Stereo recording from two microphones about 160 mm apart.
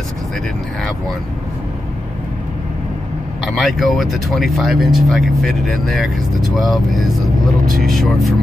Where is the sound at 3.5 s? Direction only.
Centre (ahead or behind).